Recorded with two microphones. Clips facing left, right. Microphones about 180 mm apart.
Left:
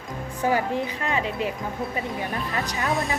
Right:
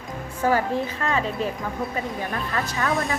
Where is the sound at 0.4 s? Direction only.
15° left (ahead or behind).